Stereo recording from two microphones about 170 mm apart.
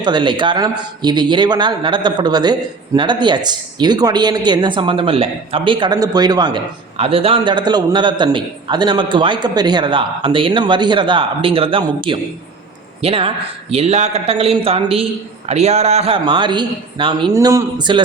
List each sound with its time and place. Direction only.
0.0 s a man's voice: 25° right (ahead or behind)